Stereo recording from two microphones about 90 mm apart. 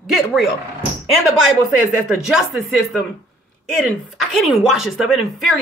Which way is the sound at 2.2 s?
5° right (ahead or behind).